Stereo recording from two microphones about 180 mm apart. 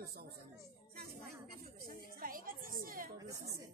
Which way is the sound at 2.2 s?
50° right (ahead or behind).